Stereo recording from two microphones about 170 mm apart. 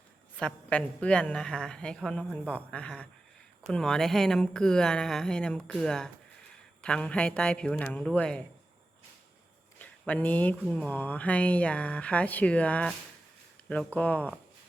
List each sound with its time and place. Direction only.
0.3 s speech: 5° left (ahead or behind)
9.7 s speech: 10° left (ahead or behind)